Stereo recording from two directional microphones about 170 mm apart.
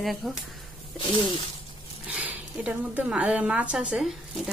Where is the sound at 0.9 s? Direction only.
30° left (ahead or behind).